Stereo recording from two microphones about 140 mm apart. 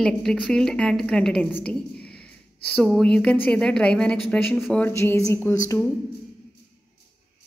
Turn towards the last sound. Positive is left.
turn(degrees=20)  # may be behind; listen again after turning